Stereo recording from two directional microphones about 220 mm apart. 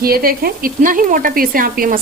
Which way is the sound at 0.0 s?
40° right (ahead or behind).